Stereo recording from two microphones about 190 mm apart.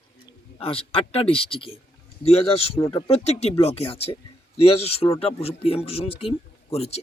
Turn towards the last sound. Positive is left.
turn(degrees=35)  # may be behind; listen again after turning